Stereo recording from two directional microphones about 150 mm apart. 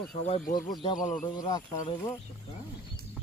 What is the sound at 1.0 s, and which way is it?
Speech, 60° left (ahead or behind).